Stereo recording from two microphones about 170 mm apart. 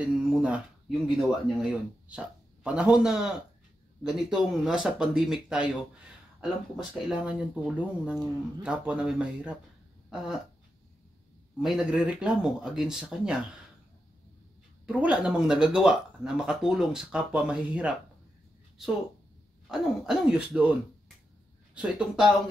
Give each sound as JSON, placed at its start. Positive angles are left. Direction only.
{"t": 0.0, "sound": "a sound", "side_deg": -5}
{"t": 1.6, "sound": "speech", "side_deg": -5}
{"t": 6.9, "sound": "speech", "side_deg": -5}
{"t": 11.6, "sound": "speech", "side_deg": -5}
{"t": 14.9, "sound": "speech", "side_deg": -5}
{"t": 19.7, "sound": "speech", "side_deg": 0}
{"t": 21.7, "sound": "speech", "side_deg": -5}